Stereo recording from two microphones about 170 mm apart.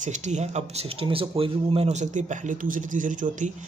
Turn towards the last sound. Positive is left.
turn(degrees=-50)  # may be behind; listen again after turning